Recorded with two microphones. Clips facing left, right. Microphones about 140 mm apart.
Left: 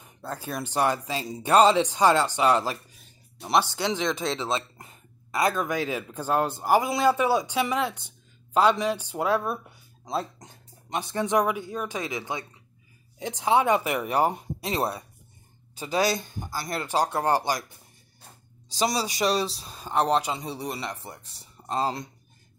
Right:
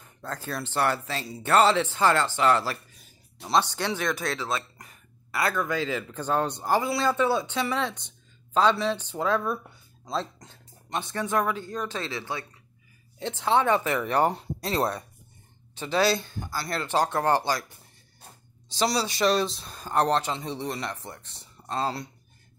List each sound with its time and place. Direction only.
0.0 s speech: 10° left (ahead or behind)
18.8 s speech: 15° left (ahead or behind)